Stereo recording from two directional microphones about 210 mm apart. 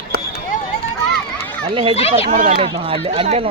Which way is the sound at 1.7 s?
25° right (ahead or behind).